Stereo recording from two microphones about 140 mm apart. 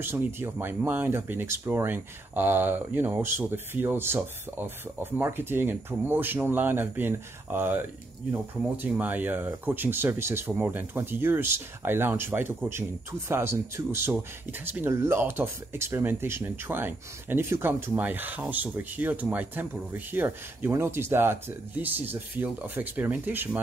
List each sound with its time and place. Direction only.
0.0 s speech: 15° right (ahead or behind)
8.8 s speech: 10° right (ahead or behind)